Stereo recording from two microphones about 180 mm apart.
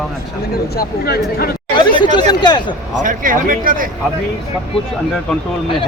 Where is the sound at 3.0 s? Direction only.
45° right (ahead or behind).